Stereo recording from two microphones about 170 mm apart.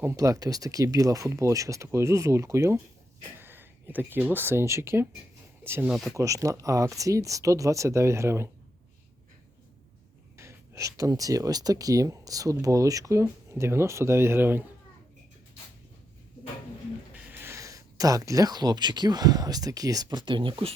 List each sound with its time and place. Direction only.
0.0 s speech: 15° right (ahead or behind)
5.9 s speech: centre (ahead or behind)
6.1 s speech: 20° right (ahead or behind)
10.3 s speech: 15° right (ahead or behind)
17.2 s speech: 10° right (ahead or behind); by 20.7 s 30° right (ahead or behind)